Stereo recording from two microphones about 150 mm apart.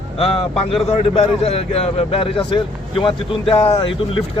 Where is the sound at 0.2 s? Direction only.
40° left (ahead or behind).